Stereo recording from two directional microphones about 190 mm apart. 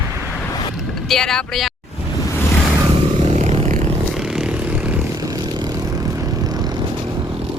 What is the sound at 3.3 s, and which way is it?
Vehicle, 35° right (ahead or behind).